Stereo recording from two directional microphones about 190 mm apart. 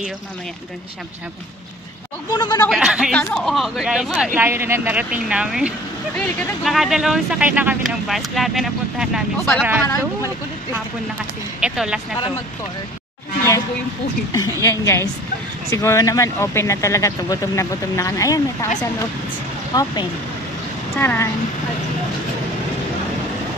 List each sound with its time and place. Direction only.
2.3 s speech: 20° left (ahead or behind)
2.7 s speech: 5° right (ahead or behind)
11.6 s speech: 5° right (ahead or behind)
14.3 s speech: 15° left (ahead or behind)
19.7 s speech: 20° left (ahead or behind)